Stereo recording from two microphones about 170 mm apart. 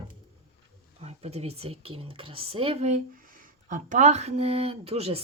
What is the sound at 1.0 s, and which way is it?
Speech, 40° right (ahead or behind).